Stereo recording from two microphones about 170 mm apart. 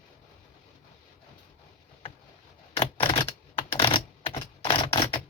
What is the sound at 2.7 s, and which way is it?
Typewriter, 35° left (ahead or behind).